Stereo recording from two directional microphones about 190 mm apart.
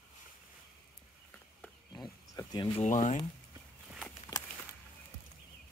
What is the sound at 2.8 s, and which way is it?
Speech, 40° left (ahead or behind).